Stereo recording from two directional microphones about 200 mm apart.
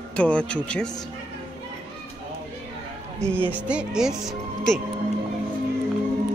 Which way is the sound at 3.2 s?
10° right (ahead or behind).